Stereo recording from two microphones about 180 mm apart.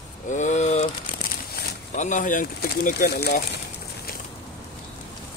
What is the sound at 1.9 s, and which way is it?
Speech, 45° left (ahead or behind).